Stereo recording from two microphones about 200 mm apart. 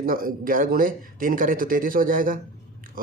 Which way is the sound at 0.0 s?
45° right (ahead or behind).